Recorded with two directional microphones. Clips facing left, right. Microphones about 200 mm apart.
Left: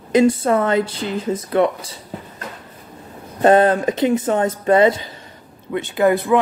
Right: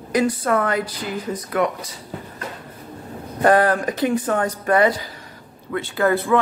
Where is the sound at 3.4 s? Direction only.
25° left (ahead or behind).